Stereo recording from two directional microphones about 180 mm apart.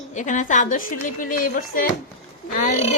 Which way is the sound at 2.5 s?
35° left (ahead or behind).